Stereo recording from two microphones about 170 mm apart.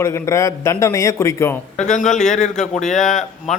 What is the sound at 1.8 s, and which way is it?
Speech, 45° left (ahead or behind).